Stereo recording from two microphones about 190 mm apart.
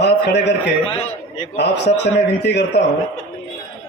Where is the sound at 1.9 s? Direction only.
35° left (ahead or behind).